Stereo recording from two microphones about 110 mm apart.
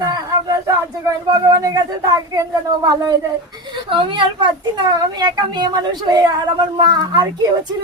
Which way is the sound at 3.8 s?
50° right (ahead or behind).